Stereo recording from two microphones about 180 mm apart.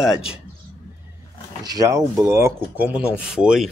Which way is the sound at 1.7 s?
20° right (ahead or behind).